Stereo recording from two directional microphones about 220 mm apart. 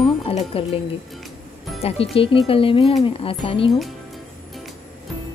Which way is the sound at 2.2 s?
25° left (ahead or behind).